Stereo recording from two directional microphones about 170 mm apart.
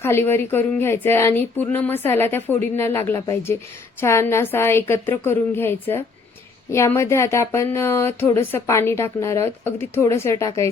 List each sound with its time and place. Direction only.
0.0 s speech: 15° left (ahead or behind)